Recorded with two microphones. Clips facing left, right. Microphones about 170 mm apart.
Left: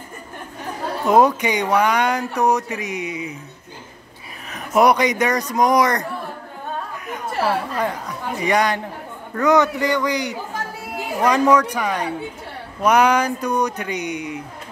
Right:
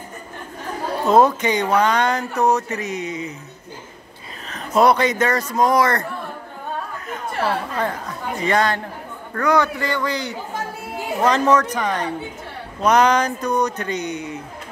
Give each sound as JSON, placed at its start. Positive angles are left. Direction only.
{"t": 1.0, "sound": "speech", "side_deg": 15}
{"t": 4.5, "sound": "speech", "side_deg": 15}
{"t": 7.1, "sound": "speech", "side_deg": 10}